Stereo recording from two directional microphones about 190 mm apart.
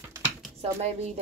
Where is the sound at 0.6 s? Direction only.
30° right (ahead or behind).